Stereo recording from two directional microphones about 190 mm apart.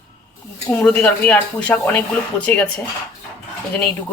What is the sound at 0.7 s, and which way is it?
Speech, 5° left (ahead or behind).